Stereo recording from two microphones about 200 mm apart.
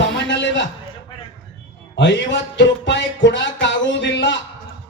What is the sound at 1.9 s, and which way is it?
Speech, 65° left (ahead or behind).